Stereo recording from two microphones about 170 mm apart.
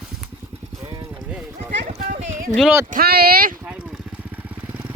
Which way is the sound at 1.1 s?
5° right (ahead or behind).